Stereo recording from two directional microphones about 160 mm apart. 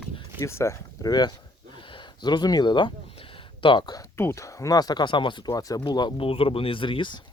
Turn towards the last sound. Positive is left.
turn(degrees=30)  # may be behind; listen again after turning